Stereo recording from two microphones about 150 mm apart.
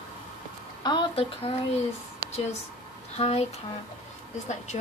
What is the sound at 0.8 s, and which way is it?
Speech, 35° left (ahead or behind).